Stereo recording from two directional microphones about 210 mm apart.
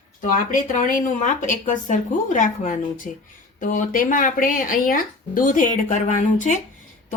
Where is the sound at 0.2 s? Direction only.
40° left (ahead or behind).